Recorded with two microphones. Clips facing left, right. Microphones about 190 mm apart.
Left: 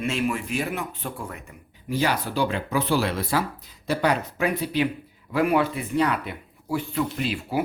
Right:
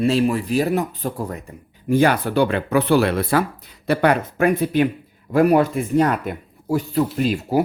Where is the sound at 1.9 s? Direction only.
55° right (ahead or behind).